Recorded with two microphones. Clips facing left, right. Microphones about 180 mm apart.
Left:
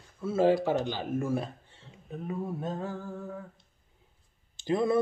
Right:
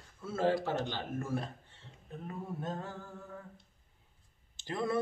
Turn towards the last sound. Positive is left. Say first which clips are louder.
# left 8 dB
turn(degrees=15)  # may be behind; listen again after turning